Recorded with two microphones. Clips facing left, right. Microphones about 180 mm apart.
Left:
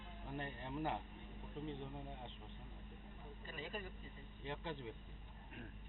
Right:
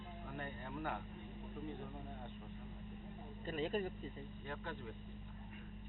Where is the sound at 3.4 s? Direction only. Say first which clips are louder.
Right 10 dB; 45° right (ahead or behind).